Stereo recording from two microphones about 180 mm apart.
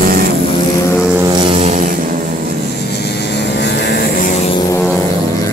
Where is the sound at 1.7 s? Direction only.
50° right (ahead or behind).